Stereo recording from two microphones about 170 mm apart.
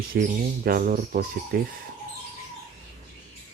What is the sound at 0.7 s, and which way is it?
Speech, 60° right (ahead or behind).